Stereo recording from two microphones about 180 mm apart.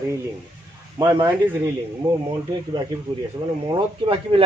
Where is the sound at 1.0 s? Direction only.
20° right (ahead or behind).